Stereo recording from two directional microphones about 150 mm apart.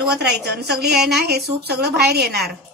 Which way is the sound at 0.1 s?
90° right.